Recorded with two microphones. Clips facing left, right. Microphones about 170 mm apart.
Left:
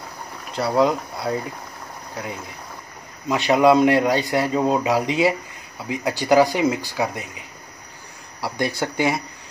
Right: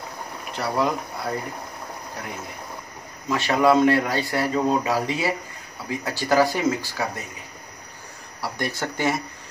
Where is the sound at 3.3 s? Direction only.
15° left (ahead or behind).